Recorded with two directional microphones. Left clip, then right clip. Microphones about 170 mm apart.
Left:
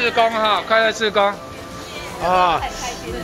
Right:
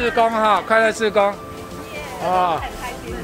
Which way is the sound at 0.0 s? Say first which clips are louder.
Even; 30° right (ahead or behind).